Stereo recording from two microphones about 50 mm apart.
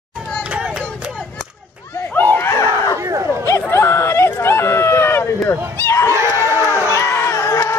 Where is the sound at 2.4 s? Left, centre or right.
Left.